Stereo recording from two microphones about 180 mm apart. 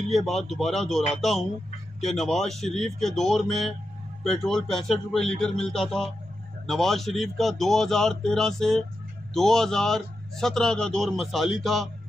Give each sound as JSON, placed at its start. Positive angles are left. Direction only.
{"t": 0.1, "sound": "a man's voice", "side_deg": 0}